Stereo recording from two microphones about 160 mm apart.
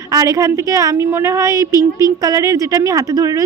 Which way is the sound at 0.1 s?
20° right (ahead or behind).